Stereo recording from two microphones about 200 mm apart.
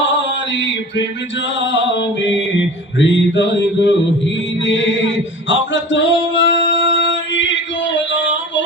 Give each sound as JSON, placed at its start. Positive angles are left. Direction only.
{"t": 0.5, "sound": "music", "side_deg": 65}
{"t": 1.5, "sound": "mantra", "side_deg": 65}
{"t": 4.6, "sound": "male singing", "side_deg": 65}